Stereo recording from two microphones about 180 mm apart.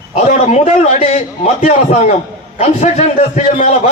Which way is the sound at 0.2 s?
40° left (ahead or behind).